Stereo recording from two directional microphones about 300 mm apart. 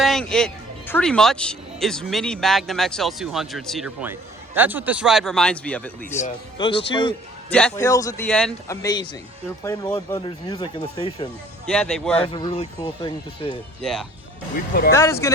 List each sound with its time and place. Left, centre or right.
0.0 s speech: centre
6.1 s speech: left
11.6 s speech: centre
12.1 s speech: centre
13.5 s speech: centre